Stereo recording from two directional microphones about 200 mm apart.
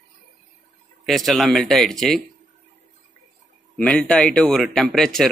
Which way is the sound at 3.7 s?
5° left (ahead or behind).